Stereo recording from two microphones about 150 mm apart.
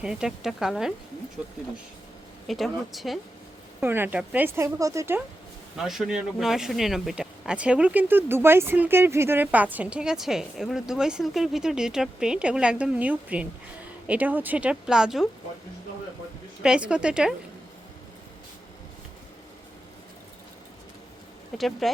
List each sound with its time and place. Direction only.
0.0 s speech: 5° right (ahead or behind)
2.5 s speech: centre (ahead or behind)
3.8 s speech: 15° right (ahead or behind)
5.7 s speech: centre (ahead or behind)
16.6 s speech: 5° right (ahead or behind)
21.6 s speech: centre (ahead or behind)